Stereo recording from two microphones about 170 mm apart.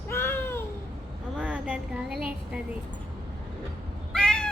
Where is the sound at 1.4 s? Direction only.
5° right (ahead or behind).